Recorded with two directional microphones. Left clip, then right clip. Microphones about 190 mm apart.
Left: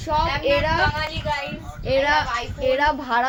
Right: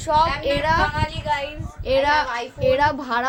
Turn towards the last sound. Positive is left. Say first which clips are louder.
# even
turn(degrees=-5)  # may be behind; listen again after turning